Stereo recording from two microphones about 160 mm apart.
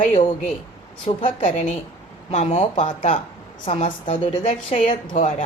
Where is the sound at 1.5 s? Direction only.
50° left (ahead or behind).